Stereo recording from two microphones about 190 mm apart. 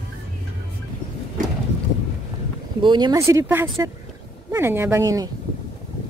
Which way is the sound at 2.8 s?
25° right (ahead or behind).